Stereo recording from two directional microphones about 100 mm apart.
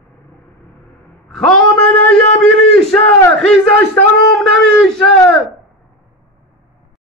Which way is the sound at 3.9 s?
5° left (ahead or behind).